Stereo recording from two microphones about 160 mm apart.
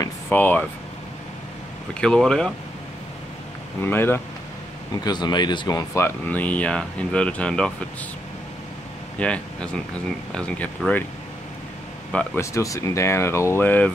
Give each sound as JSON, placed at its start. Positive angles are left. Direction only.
{"t": 0.3, "sound": "speech", "side_deg": 10}
{"t": 2.0, "sound": "speech", "side_deg": 5}
{"t": 3.8, "sound": "speech", "side_deg": 15}
{"t": 5.0, "sound": "speech", "side_deg": 25}
{"t": 9.2, "sound": "speech", "side_deg": 5}
{"t": 12.4, "sound": "speech", "side_deg": 20}